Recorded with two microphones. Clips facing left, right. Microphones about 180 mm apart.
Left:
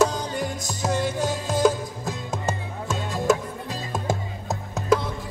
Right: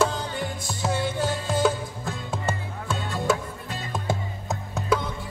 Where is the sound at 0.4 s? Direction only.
40° left (ahead or behind).